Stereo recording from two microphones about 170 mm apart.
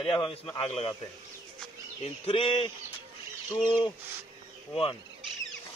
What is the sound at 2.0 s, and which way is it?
Speech, 35° left (ahead or behind).